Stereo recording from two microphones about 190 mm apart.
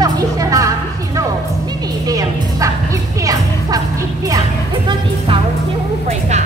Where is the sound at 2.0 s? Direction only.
20° right (ahead or behind).